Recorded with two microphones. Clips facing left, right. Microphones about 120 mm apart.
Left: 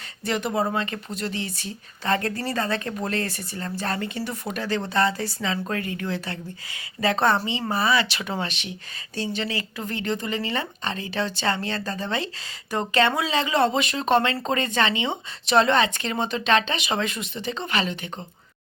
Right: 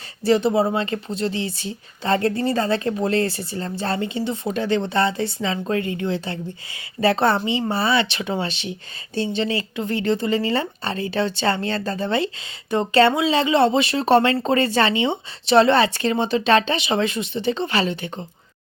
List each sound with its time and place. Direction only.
0.3 s a woman's voice: 30° right (ahead or behind)